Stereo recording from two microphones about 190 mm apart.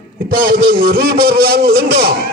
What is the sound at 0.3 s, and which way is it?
A man's voice, 50° right (ahead or behind).